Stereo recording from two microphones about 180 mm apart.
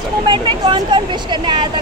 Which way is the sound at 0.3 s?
25° right (ahead or behind).